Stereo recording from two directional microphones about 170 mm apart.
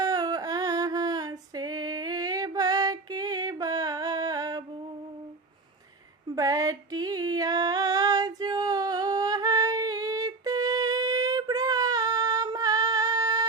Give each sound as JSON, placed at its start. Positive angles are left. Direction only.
{"t": 0.0, "sound": "female singing", "side_deg": -20}
{"t": 6.3, "sound": "female singing", "side_deg": -20}